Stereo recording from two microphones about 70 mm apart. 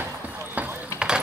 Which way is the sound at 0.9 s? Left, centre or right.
Left.